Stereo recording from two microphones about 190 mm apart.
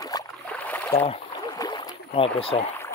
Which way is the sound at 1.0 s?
30° left (ahead or behind).